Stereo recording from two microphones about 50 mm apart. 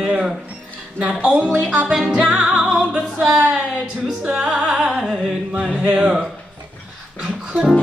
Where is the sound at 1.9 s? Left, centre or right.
Centre.